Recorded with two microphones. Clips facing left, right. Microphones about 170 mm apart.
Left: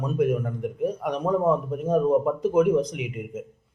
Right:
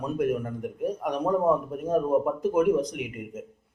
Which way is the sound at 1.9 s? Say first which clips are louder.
Left 3 dB; 5° right (ahead or behind).